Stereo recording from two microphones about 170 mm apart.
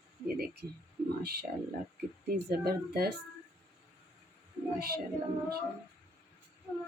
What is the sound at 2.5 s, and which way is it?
Speech, 65° right (ahead or behind).